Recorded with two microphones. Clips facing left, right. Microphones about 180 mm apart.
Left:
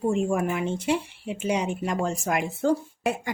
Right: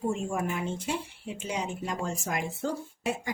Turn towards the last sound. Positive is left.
turn(degrees=65)  # may be behind; listen again after turning